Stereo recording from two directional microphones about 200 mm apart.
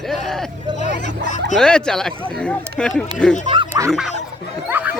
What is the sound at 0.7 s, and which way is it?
Vehicle, 40° left (ahead or behind).